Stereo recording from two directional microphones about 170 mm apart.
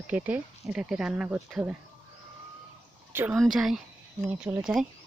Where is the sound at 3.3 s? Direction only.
Centre (ahead or behind).